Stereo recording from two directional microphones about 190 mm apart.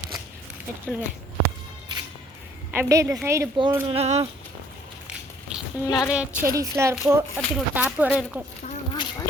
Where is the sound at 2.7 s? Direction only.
15° right (ahead or behind).